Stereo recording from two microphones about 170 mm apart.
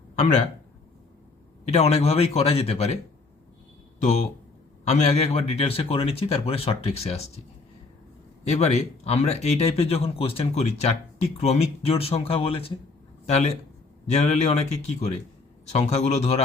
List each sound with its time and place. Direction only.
1.7 s speech: 40° left (ahead or behind)
4.9 s speech: 40° left (ahead or behind)
8.4 s speech: 40° left (ahead or behind)